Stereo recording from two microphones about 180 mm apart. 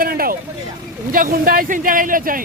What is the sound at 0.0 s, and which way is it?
Vehicle, 55° right (ahead or behind).